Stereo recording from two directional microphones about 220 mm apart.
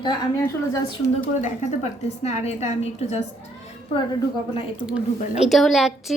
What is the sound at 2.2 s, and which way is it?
Speech, 30° left (ahead or behind).